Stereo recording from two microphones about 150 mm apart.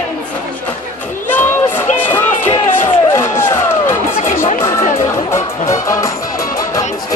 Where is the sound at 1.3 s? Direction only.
10° left (ahead or behind).